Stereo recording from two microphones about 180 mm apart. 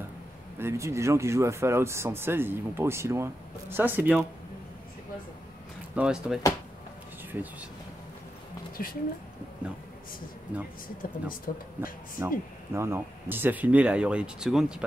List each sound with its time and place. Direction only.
0.6 s speech: 15° right (ahead or behind)
5.9 s speech: 5° right (ahead or behind)
8.8 s speech: 55° left (ahead or behind)
11.0 s speech: 50° left (ahead or behind)
12.2 s speech: 15° right (ahead or behind)